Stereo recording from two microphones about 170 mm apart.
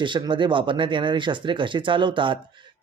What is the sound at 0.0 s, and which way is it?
Speech, 30° right (ahead or behind).